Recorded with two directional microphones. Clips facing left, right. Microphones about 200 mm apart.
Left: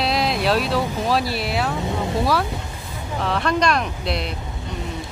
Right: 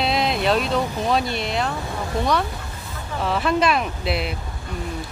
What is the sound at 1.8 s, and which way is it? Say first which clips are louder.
Vehicle: left 3 dB; 20° left (ahead or behind).